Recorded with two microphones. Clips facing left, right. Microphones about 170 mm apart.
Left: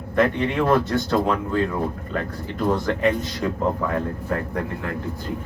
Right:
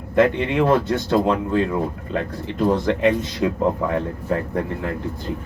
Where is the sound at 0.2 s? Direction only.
20° right (ahead or behind).